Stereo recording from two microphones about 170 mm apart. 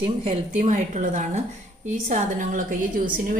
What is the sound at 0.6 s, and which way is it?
A woman's voice, 45° right (ahead or behind).